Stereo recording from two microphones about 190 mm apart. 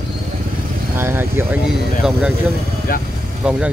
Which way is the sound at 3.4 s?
5° right (ahead or behind).